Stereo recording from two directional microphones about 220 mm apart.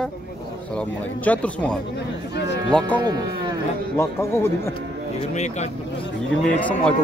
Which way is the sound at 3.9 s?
10° left (ahead or behind).